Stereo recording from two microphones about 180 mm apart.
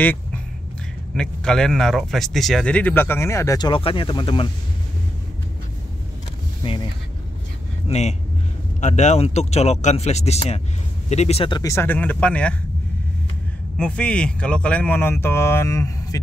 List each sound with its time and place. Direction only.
1.1 s speech: 5° left (ahead or behind); by 4.5 s 25° left (ahead or behind)
7.9 s speech: 40° left (ahead or behind); by 12.5 s 5° left (ahead or behind)
13.7 s speech: 5° left (ahead or behind)